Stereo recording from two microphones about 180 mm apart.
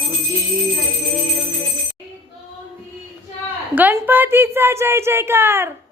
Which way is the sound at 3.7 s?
10° right (ahead or behind).